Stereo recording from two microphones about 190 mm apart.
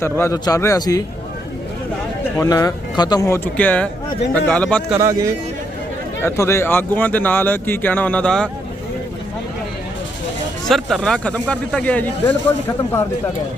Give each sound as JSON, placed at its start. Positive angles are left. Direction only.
{"t": 0.0, "sound": "speech", "side_deg": 15}
{"t": 2.4, "sound": "speech", "side_deg": 20}
{"t": 4.9, "sound": "speech", "side_deg": -15}
{"t": 6.2, "sound": "speech", "side_deg": 15}
{"t": 10.7, "sound": "speech", "side_deg": 0}